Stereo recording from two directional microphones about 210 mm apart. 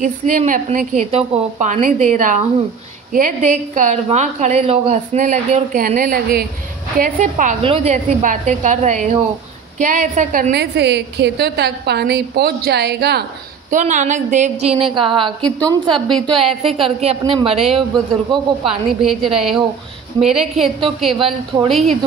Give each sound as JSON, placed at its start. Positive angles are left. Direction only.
{"t": 0.0, "sound": "a woman's voice", "side_deg": -35}
{"t": 13.7, "sound": "a woman's voice", "side_deg": -35}
{"t": 15.9, "sound": "a woman's voice", "side_deg": 0}
{"t": 16.6, "sound": "speech", "side_deg": -25}
{"t": 18.7, "sound": "a woman's voice", "side_deg": 0}